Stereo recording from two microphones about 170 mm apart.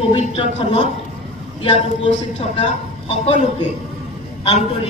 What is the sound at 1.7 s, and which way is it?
A woman's voice, 40° left (ahead or behind).